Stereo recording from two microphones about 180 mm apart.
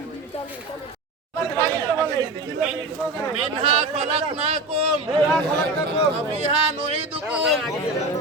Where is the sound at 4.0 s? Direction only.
35° right (ahead or behind).